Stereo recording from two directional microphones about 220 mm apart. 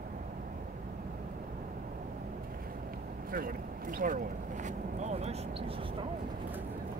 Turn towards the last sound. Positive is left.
turn(degrees=-25)  # may be behind; listen again after turning